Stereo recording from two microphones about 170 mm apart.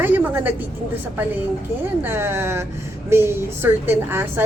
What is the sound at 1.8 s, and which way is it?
Speech, 10° right (ahead or behind).